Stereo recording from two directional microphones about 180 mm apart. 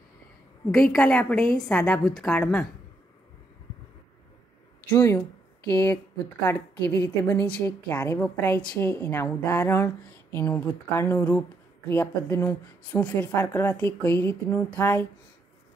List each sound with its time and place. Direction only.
0.7 s a woman's voice: 5° left (ahead or behind)
4.9 s a woman's voice: 15° left (ahead or behind)
6.4 s a woman's voice: 15° left (ahead or behind)